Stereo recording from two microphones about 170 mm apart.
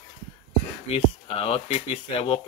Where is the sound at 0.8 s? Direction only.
35° left (ahead or behind).